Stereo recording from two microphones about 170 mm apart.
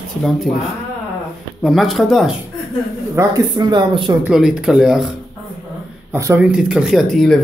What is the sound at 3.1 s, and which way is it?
Speech, 25° right (ahead or behind).